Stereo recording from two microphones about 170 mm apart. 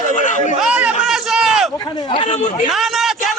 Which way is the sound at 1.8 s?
25° left (ahead or behind).